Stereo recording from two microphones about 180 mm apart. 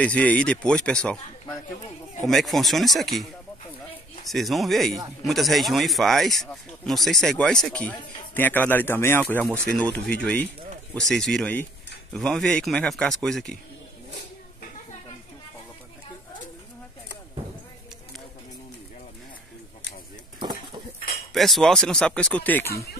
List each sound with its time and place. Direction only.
0.0 s speech: 5° left (ahead or behind)
2.2 s speech: centre (ahead or behind)
4.3 s speech: centre (ahead or behind)
20.3 s a sound: 25° right (ahead or behind)
21.3 s speech: centre (ahead or behind)